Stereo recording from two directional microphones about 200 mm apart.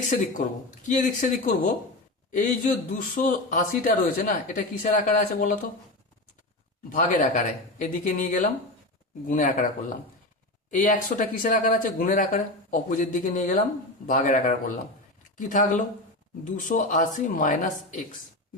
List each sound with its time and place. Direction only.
0.1 s speech: 40° left (ahead or behind)
6.9 s speech: 40° left (ahead or behind)
10.7 s speech: 40° left (ahead or behind)